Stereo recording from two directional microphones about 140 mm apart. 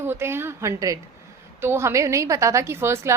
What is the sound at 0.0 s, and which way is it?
A woman's voice, 15° right (ahead or behind).